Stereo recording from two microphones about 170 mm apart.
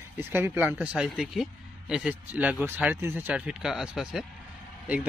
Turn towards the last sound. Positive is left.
turn(degrees=-10)  # may be behind; listen again after turning